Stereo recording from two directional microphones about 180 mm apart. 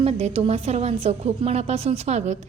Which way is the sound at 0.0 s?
35° right (ahead or behind).